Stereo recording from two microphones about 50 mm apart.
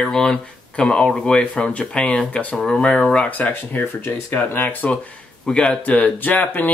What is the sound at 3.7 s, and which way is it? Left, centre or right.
Speech, left.